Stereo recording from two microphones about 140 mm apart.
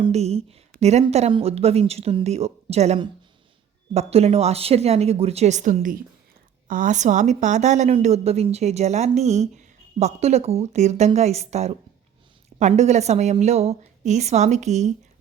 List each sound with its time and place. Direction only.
0.1 s a woman's voice: 50° right (ahead or behind)